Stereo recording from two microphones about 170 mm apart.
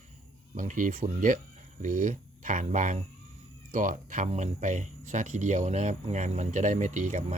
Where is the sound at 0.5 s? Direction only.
50° right (ahead or behind).